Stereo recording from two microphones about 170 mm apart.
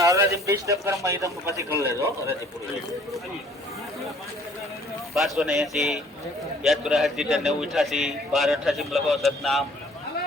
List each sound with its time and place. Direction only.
0.0 s a man's voice: 20° right (ahead or behind)
5.1 s a man's voice: centre (ahead or behind)